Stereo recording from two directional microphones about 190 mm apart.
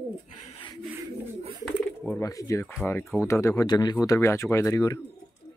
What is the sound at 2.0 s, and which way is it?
Speech, 15° left (ahead or behind).